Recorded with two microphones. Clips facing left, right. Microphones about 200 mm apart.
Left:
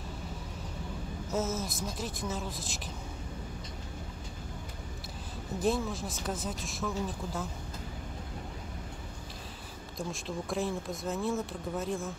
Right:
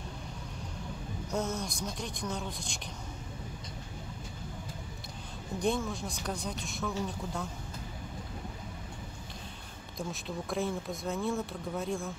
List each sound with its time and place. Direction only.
1.3 s speech: 5° left (ahead or behind)
5.6 s speech: centre (ahead or behind)
9.9 s speech: centre (ahead or behind)